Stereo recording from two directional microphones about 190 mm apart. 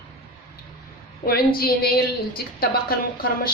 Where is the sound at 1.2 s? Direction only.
55° left (ahead or behind).